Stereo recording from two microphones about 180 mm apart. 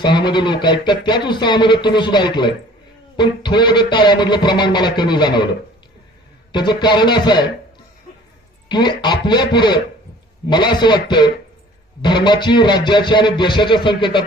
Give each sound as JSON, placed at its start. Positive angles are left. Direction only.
{"t": 0.0, "sound": "speech", "side_deg": 25}
{"t": 6.5, "sound": "speech", "side_deg": 25}
{"t": 8.7, "sound": "speech", "side_deg": 25}